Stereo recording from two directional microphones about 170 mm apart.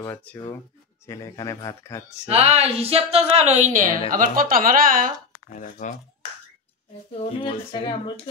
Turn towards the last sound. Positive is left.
turn(degrees=30)  # may be behind; listen again after turning